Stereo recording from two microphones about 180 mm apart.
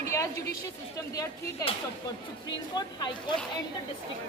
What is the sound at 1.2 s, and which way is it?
Speech, 30° left (ahead or behind).